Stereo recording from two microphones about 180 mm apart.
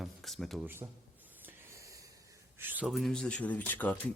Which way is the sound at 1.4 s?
10° right (ahead or behind).